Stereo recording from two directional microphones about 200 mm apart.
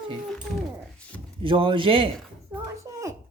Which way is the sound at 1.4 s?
25° right (ahead or behind).